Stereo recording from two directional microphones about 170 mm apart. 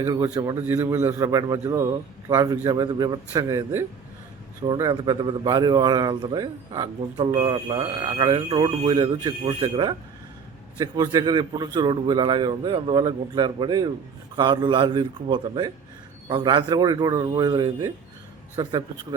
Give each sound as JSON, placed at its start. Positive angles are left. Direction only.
{"t": 0.0, "sound": "a man's voice", "side_deg": -20}